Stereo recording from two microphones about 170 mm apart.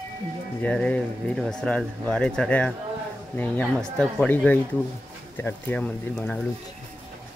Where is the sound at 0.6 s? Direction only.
5° left (ahead or behind).